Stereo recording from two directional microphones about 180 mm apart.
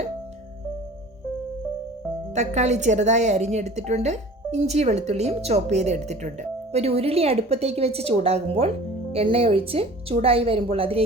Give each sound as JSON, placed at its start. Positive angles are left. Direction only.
{"t": 2.3, "sound": "a woman's voice", "side_deg": -40}